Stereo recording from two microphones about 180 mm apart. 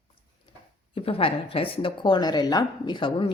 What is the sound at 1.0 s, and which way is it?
A woman's voice, 30° left (ahead or behind).